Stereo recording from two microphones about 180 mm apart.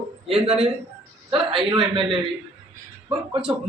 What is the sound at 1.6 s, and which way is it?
Speech, 30° right (ahead or behind).